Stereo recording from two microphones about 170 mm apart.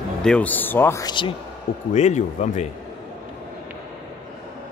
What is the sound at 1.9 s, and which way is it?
Speech, 45° left (ahead or behind).